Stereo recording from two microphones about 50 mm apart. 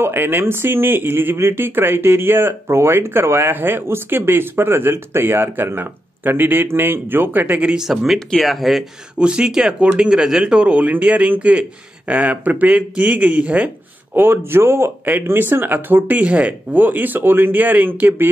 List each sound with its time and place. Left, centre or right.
0.0 s speech: right
7.6 s speech: centre
9.2 s speech: centre
14.1 s speech: right
16.1 s speech: right